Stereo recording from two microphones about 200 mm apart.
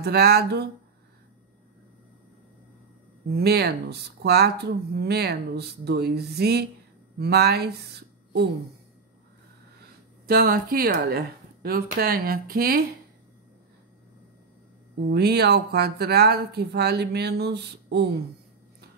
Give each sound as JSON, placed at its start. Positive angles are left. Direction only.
{"t": 0.0, "sound": "speech", "side_deg": -50}
{"t": 3.3, "sound": "speech", "side_deg": -50}
{"t": 10.2, "sound": "speech", "side_deg": -45}
{"t": 15.0, "sound": "speech", "side_deg": -55}